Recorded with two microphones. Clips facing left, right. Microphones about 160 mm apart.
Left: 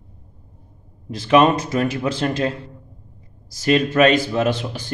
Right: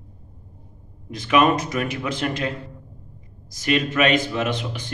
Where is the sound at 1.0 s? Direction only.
30° left (ahead or behind).